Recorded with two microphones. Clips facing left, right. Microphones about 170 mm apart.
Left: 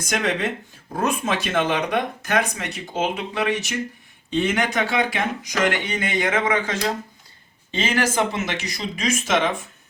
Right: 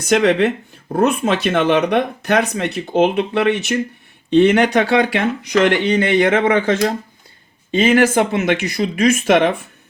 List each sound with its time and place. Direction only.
0.0 s speech: 65° right (ahead or behind)